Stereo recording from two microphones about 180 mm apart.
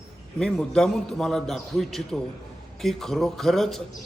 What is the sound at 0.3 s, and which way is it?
A man's voice, 5° left (ahead or behind).